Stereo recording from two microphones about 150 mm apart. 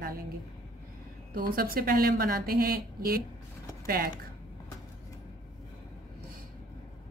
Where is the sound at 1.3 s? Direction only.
75° right (ahead or behind).